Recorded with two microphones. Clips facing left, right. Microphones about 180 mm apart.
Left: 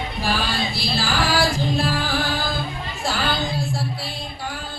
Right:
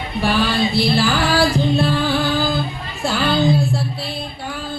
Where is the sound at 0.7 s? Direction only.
60° right (ahead or behind).